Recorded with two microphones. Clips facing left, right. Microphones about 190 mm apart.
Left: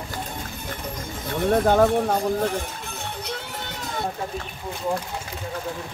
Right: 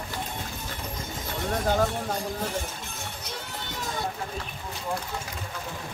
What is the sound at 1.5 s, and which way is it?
Speech, 55° left (ahead or behind).